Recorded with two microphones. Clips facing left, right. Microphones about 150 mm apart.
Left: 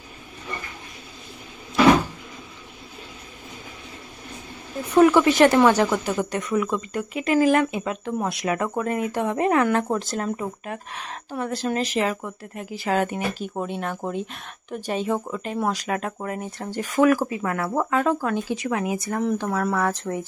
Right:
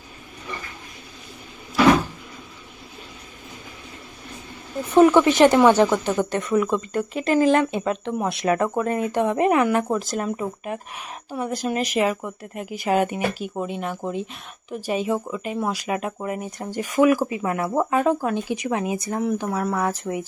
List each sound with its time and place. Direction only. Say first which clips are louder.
4.9 s speech: right 1 dB; 20° right (ahead or behind)
13.6 s speech: even; 5° right (ahead or behind); by 19.2 s 20° right (ahead or behind)
19.2 s speech: left 1 dB; 5° right (ahead or behind)